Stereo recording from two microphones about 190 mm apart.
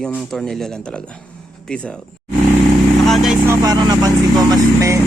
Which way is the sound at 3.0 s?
Centre (ahead or behind).